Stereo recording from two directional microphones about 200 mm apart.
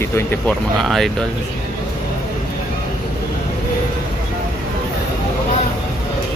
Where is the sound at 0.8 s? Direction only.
Centre (ahead or behind).